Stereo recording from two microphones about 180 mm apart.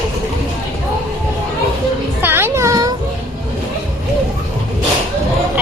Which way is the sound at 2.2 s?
10° right (ahead or behind).